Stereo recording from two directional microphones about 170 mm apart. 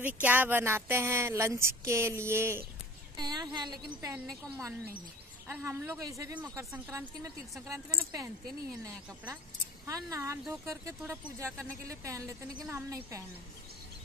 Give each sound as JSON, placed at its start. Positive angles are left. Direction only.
{"t": 0.0, "sound": "a woman's voice", "side_deg": -10}
{"t": 9.8, "sound": "speech", "side_deg": -20}